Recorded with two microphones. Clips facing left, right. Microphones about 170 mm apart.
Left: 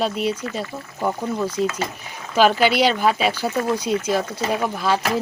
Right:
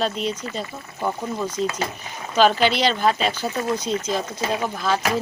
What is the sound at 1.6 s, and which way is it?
Speech, 55° left (ahead or behind).